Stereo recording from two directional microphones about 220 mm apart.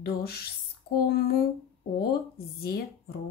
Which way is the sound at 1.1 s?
45° left (ahead or behind).